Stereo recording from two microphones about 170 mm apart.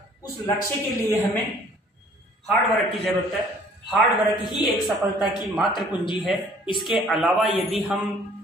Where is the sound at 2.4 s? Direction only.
Centre (ahead or behind).